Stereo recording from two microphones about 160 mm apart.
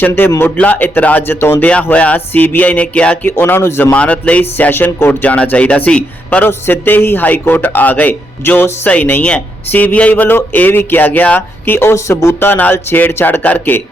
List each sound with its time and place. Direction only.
0.0 s speech: 15° left (ahead or behind)